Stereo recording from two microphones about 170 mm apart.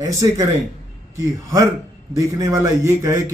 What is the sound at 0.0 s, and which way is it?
A man's voice, 20° right (ahead or behind).